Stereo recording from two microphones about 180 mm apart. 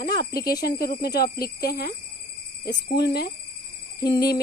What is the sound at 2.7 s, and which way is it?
Speech, 70° left (ahead or behind).